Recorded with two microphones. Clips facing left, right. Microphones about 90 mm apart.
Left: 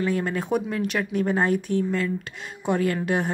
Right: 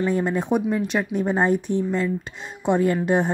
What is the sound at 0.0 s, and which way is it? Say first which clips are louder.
Speech: right 3 dB; 20° right (ahead or behind).